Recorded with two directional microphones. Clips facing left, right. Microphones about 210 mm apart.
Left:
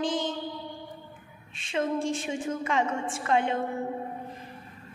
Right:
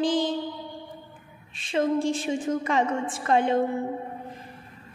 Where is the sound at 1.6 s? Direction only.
35° right (ahead or behind).